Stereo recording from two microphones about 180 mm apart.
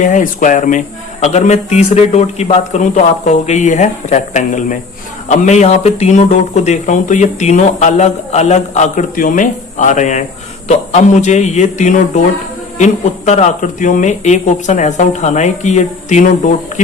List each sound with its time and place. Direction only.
0.0 s speech: 45° left (ahead or behind)